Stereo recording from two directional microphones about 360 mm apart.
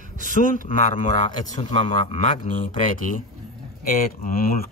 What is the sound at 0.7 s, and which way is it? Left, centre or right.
A man's voice, centre.